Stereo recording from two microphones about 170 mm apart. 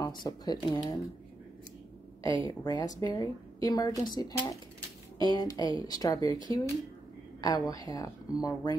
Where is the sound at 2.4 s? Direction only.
20° left (ahead or behind).